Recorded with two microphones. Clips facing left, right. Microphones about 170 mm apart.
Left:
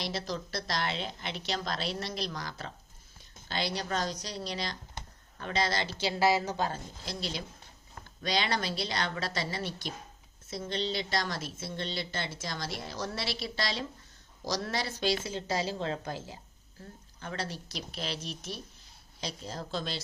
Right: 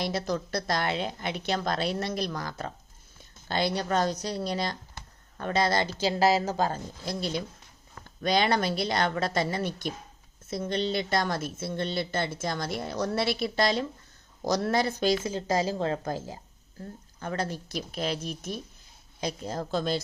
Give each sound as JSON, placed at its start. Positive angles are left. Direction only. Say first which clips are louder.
{"t": 0.0, "sound": "a woman's voice", "louder": "right 6 dB", "side_deg": -55}